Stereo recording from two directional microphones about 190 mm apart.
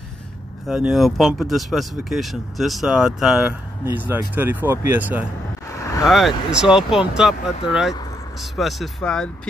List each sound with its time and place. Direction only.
0.7 s speech: 5° right (ahead or behind)
5.8 s vehicle: 15° left (ahead or behind)
6.0 s speech: centre (ahead or behind)